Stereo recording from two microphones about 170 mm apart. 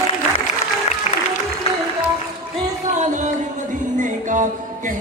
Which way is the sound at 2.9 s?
45° right (ahead or behind).